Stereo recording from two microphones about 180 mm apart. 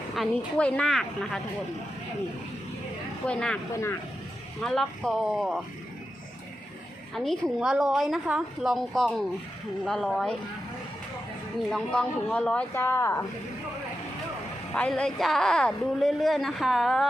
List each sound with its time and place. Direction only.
0.2 s a woman's voice: 5° left (ahead or behind)
3.2 s a woman's voice: 5° left (ahead or behind)
4.6 s a woman's voice: centre (ahead or behind)
7.1 s a woman's voice: centre (ahead or behind)
11.7 s speech: 5° left (ahead or behind)
14.7 s a woman's voice: 5° left (ahead or behind)